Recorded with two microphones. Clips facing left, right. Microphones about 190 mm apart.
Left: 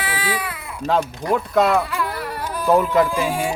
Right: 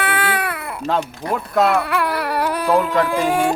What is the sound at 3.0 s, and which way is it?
Music, 65° right (ahead or behind).